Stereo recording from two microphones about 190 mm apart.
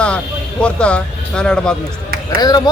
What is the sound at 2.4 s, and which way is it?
Speech, 20° left (ahead or behind).